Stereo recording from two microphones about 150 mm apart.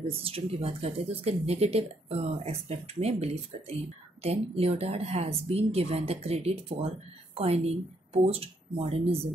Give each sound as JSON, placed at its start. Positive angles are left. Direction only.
{"t": 0.1, "sound": "speech", "side_deg": -40}